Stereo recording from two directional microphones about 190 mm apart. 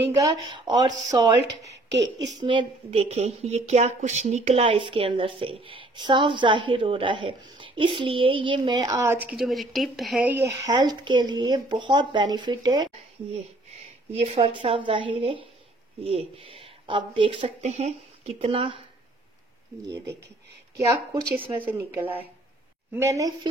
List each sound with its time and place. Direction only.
0.4 s a woman's voice: 20° right (ahead or behind)
21.5 s speech: 10° right (ahead or behind)